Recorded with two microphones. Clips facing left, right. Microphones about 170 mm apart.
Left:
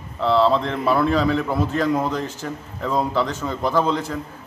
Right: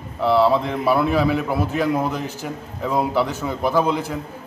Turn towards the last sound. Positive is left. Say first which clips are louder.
# right 1 dB
turn(degrees=-10)  # may be behind; listen again after turning